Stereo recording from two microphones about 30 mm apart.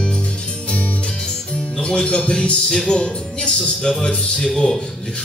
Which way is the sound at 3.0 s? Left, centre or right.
Left.